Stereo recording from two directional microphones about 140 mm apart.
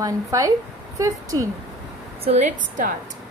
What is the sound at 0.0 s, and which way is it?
Speech, 25° right (ahead or behind).